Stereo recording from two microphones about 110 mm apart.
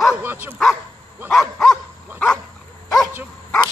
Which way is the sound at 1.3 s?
Centre (ahead or behind).